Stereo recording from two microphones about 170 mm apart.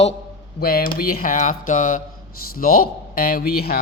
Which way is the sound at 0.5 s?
60° left (ahead or behind).